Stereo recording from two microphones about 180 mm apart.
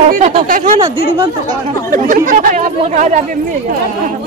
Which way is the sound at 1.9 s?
50° right (ahead or behind).